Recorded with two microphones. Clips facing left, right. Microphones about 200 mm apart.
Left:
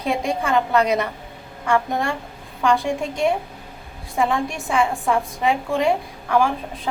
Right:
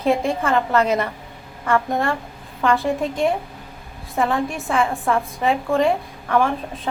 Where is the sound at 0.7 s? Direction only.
10° left (ahead or behind).